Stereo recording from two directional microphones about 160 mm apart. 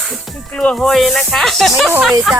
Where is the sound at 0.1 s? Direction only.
5° left (ahead or behind).